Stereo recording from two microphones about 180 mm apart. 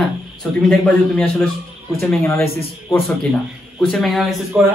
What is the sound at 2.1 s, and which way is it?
Speech, 15° left (ahead or behind).